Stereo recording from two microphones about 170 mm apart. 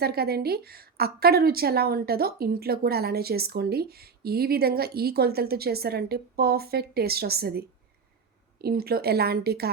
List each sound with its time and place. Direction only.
0.0 s a woman's voice: 65° right (ahead or behind)
8.6 s speech: 65° right (ahead or behind)